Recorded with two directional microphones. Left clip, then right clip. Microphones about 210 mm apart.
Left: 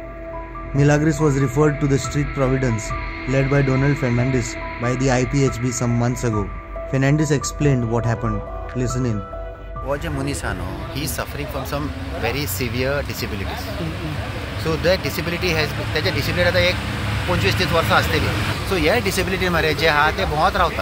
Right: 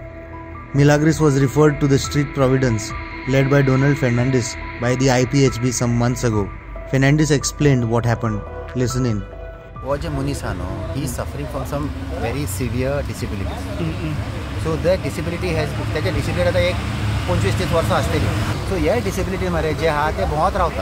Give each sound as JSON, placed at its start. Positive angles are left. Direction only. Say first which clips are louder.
{"t": 0.7, "sound": "speech", "louder": "right 2 dB", "side_deg": -20}
{"t": 12.3, "sound": "speech", "louder": "left 4 dB", "side_deg": -5}
{"t": 14.7, "sound": "speech", "louder": "even", "side_deg": -5}